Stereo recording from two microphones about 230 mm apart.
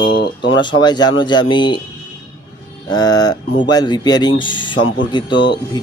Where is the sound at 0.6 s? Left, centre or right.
Centre.